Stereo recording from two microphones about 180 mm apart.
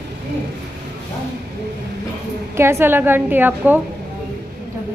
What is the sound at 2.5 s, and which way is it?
A woman's voice, 15° right (ahead or behind).